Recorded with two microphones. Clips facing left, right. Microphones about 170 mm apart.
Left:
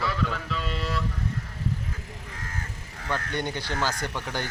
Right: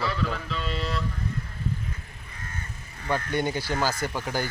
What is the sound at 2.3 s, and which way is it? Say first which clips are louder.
Crow: left 1 dB; 90° left.